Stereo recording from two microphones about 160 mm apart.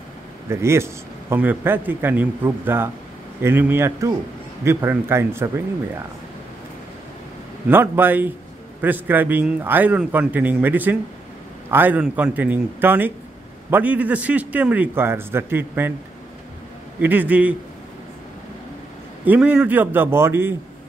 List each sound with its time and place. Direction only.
0.5 s a man's voice: 15° right (ahead or behind)
7.6 s a man's voice: 15° right (ahead or behind)
17.0 s a man's voice: 10° right (ahead or behind)
19.2 s a man's voice: 10° right (ahead or behind)